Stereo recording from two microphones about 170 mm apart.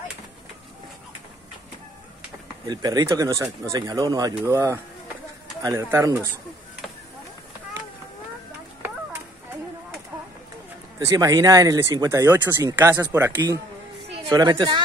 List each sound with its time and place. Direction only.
2.6 s speech: 20° right (ahead or behind)
11.0 s speech: 20° right (ahead or behind)
14.3 s speech: 25° right (ahead or behind)